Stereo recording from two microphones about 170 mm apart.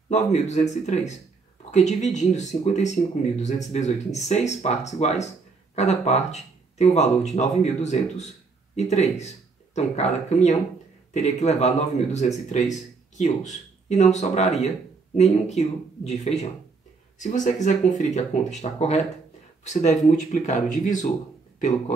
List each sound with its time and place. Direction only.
0.1 s speech: 40° left (ahead or behind)